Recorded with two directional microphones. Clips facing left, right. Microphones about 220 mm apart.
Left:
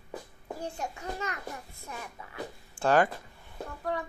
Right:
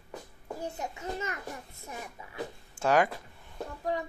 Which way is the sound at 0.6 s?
20° right (ahead or behind).